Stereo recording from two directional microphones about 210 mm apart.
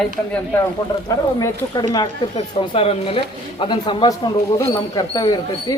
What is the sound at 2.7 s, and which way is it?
Speech, 25° left (ahead or behind).